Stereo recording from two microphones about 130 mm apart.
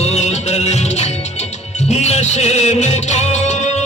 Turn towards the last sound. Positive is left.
turn(degrees=60)  # may be behind; listen again after turning